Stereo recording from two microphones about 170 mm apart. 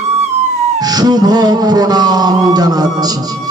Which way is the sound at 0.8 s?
25° right (ahead or behind).